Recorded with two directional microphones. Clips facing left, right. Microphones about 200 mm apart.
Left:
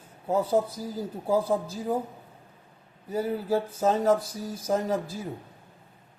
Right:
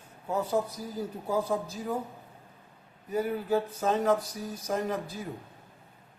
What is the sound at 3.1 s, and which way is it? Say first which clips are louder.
A man's voice: left 1 dB; 30° left (ahead or behind).